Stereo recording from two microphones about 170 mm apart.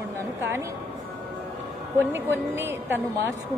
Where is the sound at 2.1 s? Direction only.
15° right (ahead or behind).